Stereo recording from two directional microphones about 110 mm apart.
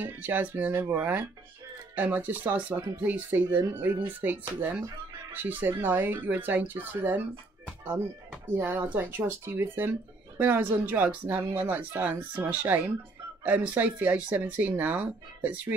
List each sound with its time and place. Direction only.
0.0 s speech: 15° right (ahead or behind)
8.5 s speech: 20° right (ahead or behind)